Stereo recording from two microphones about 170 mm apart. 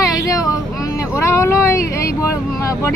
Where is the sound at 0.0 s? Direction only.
20° left (ahead or behind).